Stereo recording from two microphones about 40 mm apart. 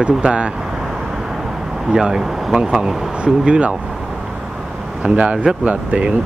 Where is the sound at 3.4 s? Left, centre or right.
Right.